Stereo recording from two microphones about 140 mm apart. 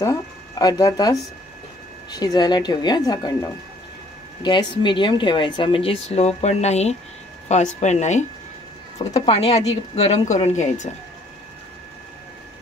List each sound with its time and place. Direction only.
0.0 s speech: 30° left (ahead or behind)
4.4 s a woman's voice: 35° left (ahead or behind); by 8.3 s 55° left (ahead or behind)
9.2 s speech: 45° left (ahead or behind); by 10.9 s 60° left (ahead or behind)